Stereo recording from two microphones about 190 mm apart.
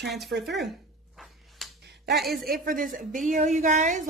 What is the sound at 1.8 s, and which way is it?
Finger snapping, 60° right (ahead or behind).